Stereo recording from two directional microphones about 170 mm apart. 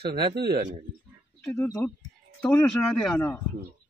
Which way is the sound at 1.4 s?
10° left (ahead or behind).